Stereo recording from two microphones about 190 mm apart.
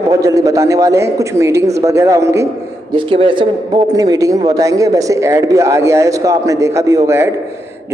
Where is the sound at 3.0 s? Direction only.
25° right (ahead or behind).